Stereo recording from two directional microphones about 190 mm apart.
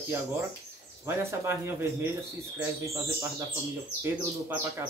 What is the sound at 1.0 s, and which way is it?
Speech, 15° right (ahead or behind).